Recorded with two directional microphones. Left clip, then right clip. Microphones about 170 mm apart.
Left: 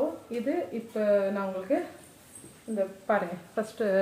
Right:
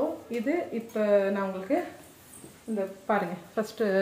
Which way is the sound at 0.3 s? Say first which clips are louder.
Right 1 dB; 25° right (ahead or behind).